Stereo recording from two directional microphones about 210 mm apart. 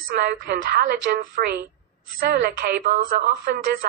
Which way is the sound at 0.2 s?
50° right (ahead or behind).